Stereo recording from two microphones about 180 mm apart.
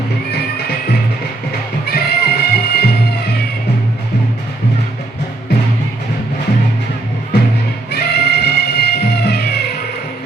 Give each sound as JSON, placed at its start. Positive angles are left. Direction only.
{"t": 0.3, "sound": "music", "side_deg": 65}
{"t": 7.9, "sound": "music", "side_deg": 65}